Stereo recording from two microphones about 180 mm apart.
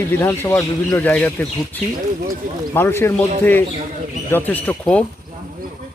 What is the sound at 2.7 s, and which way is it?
A man's voice, 15° left (ahead or behind).